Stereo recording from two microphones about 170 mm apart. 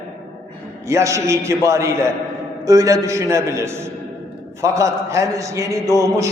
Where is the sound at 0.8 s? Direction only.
15° right (ahead or behind).